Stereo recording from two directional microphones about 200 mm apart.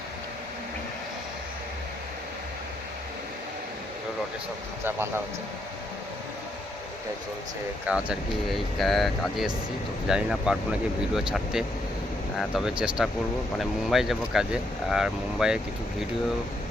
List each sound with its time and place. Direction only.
4.8 s speech: 10° right (ahead or behind)
7.9 s speech: 5° right (ahead or behind)